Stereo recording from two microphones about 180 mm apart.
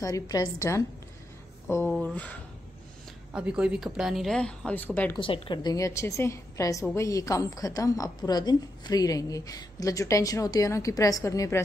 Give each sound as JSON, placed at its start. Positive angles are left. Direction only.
{"t": 0.0, "sound": "a woman's voice", "side_deg": 20}
{"t": 3.3, "sound": "a woman's voice", "side_deg": -5}
{"t": 5.1, "sound": "a woman's voice", "side_deg": 30}